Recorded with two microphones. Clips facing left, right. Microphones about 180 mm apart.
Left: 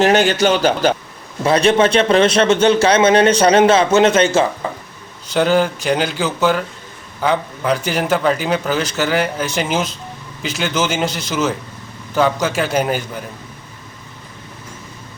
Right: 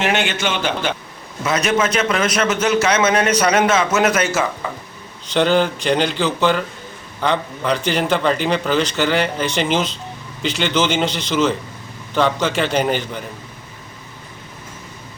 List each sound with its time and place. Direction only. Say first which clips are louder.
0.0 s a man's voice: left 7 dB; 40° left (ahead or behind)
5.3 s a man's voice: left 1 dB; 5° left (ahead or behind)